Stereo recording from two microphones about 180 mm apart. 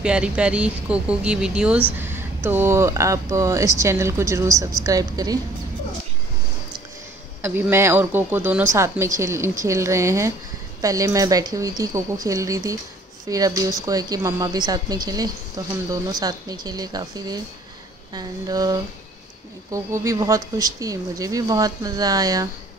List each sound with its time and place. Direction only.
0.0 s speech: 5° right (ahead or behind)
7.4 s speech: 15° right (ahead or behind)